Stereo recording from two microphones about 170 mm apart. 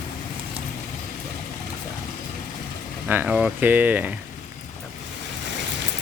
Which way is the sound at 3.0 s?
10° right (ahead or behind).